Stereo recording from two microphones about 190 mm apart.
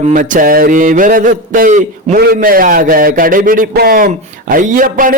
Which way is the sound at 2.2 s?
50° right (ahead or behind).